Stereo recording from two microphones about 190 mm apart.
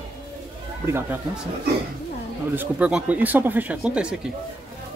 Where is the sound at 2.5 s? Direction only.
10° right (ahead or behind).